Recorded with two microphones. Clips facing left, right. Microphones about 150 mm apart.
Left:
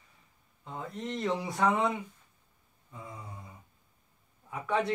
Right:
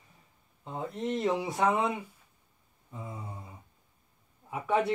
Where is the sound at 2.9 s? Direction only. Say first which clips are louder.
Right 3 dB; 25° right (ahead or behind).